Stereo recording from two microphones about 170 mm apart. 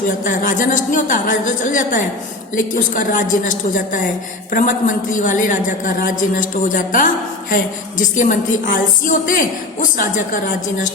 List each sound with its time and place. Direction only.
0.3 s a woman's voice: 50° left (ahead or behind)